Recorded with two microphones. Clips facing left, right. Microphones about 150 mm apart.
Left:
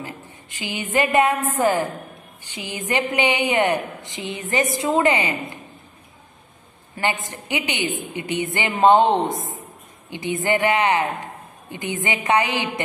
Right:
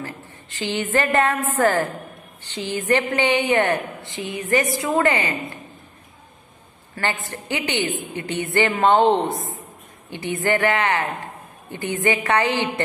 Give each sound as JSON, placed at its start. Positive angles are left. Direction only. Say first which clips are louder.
{"t": 0.0, "sound": "a woman's voice", "louder": "right 1 dB", "side_deg": 15}
{"t": 7.0, "sound": "a woman's voice", "louder": "left 1 dB", "side_deg": 15}